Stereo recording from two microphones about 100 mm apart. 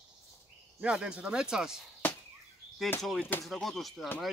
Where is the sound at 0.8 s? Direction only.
10° right (ahead or behind).